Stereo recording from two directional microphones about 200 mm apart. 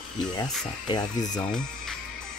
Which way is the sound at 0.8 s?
20° left (ahead or behind).